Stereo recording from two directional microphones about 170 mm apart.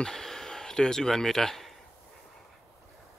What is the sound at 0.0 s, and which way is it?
Speech, 5° left (ahead or behind).